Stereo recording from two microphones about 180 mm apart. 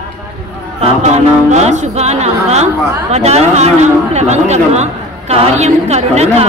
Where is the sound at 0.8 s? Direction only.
40° right (ahead or behind).